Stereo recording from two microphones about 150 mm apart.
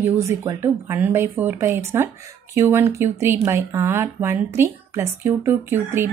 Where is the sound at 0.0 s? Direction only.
20° right (ahead or behind).